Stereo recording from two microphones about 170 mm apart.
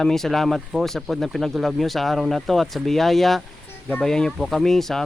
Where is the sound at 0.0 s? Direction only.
Centre (ahead or behind).